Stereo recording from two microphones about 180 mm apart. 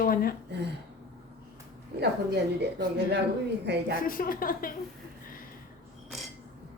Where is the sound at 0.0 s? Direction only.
55° left (ahead or behind).